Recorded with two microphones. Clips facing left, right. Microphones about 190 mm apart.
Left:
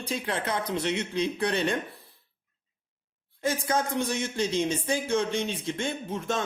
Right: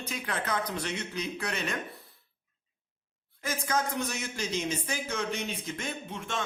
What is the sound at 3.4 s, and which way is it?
Speech, 30° left (ahead or behind).